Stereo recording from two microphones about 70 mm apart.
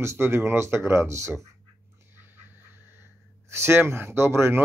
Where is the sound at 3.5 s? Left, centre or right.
Right.